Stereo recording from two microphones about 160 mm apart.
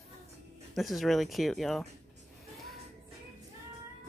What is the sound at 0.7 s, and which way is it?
Speech, centre (ahead or behind).